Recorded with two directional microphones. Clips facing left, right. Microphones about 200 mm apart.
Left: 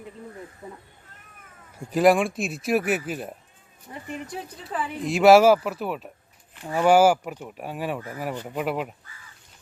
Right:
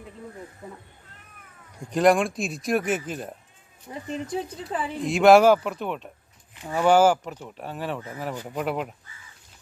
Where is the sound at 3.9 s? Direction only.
20° right (ahead or behind).